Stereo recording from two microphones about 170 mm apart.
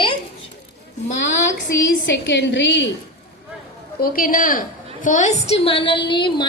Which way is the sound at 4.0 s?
55° left (ahead or behind).